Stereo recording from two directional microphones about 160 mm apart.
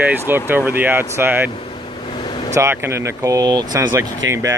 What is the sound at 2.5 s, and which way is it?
Speech, 15° right (ahead or behind).